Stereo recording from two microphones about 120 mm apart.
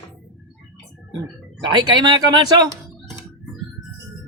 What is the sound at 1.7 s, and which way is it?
Speech, 40° right (ahead or behind).